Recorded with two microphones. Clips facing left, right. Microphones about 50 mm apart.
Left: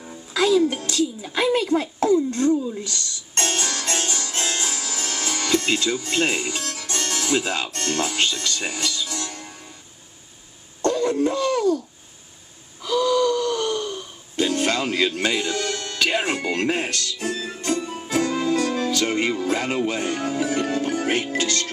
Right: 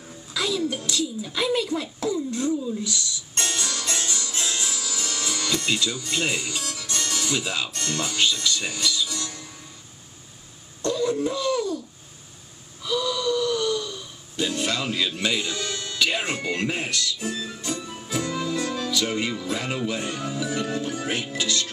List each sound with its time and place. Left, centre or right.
0.3 s music: left
1.2 s speech: left
2.8 s music: left
7.7 s speech: left
10.8 s a sound: left
12.8 s gasp: left
16.5 s music: left
19.9 s speech: left